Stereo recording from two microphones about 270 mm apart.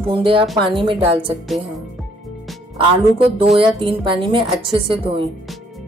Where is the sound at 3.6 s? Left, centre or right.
Centre.